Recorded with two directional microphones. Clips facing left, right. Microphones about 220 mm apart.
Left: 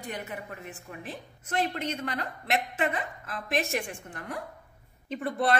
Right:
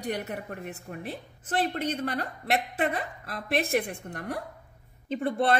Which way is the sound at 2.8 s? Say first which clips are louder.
Right 1 dB; 35° right (ahead or behind).